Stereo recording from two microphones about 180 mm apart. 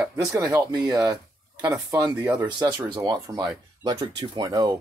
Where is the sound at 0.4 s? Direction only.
20° right (ahead or behind).